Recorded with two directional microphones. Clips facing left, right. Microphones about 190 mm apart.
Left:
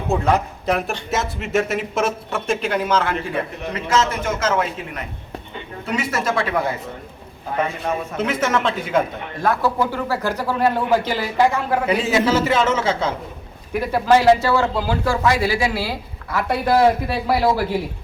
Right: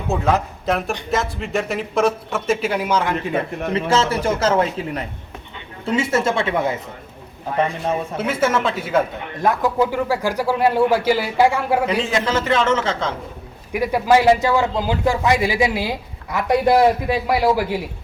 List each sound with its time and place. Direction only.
0.1 s speech: centre (ahead or behind); by 3.3 s 15° right (ahead or behind)
3.8 s a man's voice: 30° right (ahead or behind)
8.1 s speech: 10° right (ahead or behind)
11.9 s a man's voice: 5° left (ahead or behind)
13.7 s speech: 15° right (ahead or behind)